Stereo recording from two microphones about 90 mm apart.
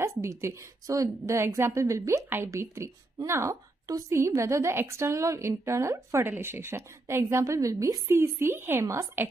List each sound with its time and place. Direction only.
0.0 s a woman's voice: 30° right (ahead or behind)